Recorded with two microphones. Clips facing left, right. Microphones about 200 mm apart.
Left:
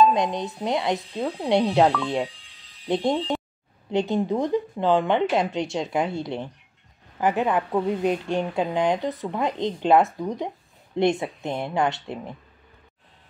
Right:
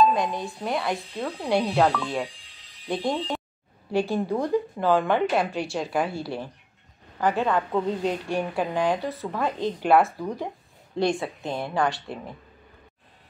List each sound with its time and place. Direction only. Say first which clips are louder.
0.1 s a woman's voice: left 2 dB; 20° left (ahead or behind)
2.9 s a woman's voice: left 4 dB; 20° left (ahead or behind)